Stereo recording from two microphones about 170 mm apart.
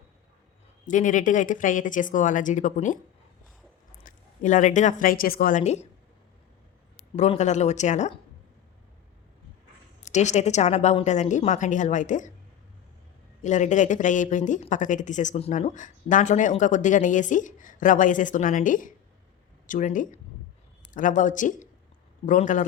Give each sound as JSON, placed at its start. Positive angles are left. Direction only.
{"t": 0.9, "sound": "speech", "side_deg": 50}
{"t": 4.0, "sound": "a woman's voice", "side_deg": 45}
{"t": 6.9, "sound": "speech", "side_deg": 40}
{"t": 10.0, "sound": "speech", "side_deg": 45}
{"t": 13.4, "sound": "speech", "side_deg": 45}